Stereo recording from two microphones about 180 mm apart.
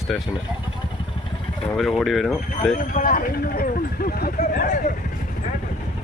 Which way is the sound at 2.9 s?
50° left (ahead or behind).